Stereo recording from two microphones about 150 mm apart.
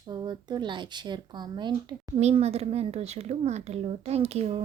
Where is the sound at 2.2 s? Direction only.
45° right (ahead or behind).